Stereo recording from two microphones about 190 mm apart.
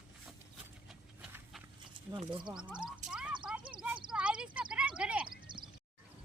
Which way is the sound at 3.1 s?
5° right (ahead or behind).